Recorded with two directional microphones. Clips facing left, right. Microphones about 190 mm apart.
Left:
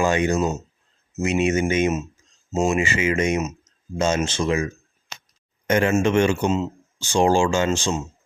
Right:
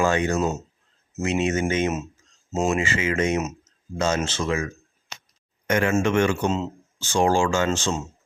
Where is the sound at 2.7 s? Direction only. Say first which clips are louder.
Left 2 dB; 15° left (ahead or behind).